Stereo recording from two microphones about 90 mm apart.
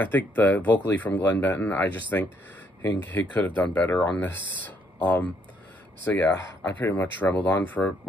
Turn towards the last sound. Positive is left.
turn(degrees=20)  # may be behind; listen again after turning